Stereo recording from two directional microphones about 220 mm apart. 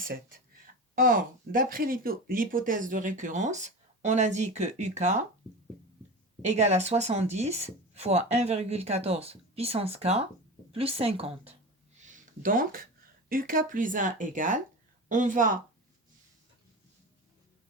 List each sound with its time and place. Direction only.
0.9 s speech: 40° right (ahead or behind)
6.4 s speech: 30° right (ahead or behind)